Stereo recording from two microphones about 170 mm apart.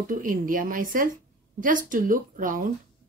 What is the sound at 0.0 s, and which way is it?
A woman's voice, 50° right (ahead or behind).